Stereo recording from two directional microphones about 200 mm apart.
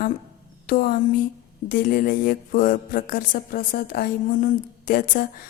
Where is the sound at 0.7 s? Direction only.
45° left (ahead or behind).